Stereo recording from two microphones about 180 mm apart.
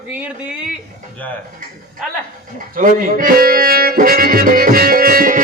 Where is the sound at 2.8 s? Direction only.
50° right (ahead or behind).